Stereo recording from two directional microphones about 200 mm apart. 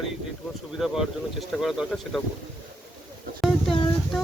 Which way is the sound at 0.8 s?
Centre (ahead or behind).